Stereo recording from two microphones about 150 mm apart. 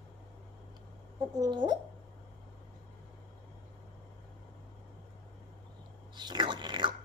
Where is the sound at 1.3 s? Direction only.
30° right (ahead or behind).